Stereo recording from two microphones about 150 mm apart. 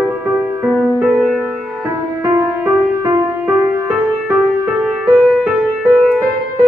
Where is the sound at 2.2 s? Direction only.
20° right (ahead or behind).